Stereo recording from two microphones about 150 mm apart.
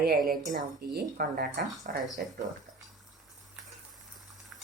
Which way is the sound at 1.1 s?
60° right (ahead or behind).